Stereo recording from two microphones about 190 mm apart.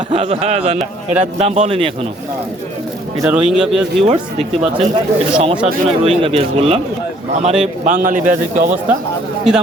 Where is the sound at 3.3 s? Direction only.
5° right (ahead or behind).